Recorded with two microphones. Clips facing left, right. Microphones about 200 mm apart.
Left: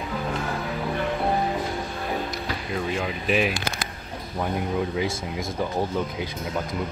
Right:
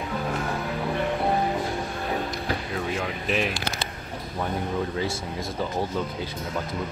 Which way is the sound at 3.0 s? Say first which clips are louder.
Left 4 dB; 5° left (ahead or behind).